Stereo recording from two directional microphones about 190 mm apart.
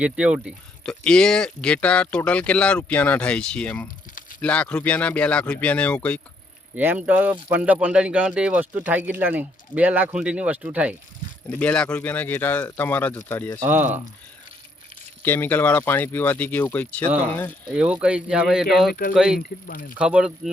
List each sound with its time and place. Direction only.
0.0 s speech: 5° right (ahead or behind)
6.7 s speech: 10° right (ahead or behind)
11.4 s speech: 5° left (ahead or behind)
13.6 s speech: 10° right (ahead or behind)
15.2 s speech: 10° left (ahead or behind)
17.7 s speech: 5° right (ahead or behind)
19.4 s speech: 50° left (ahead or behind)
20.0 s speech: 5° right (ahead or behind)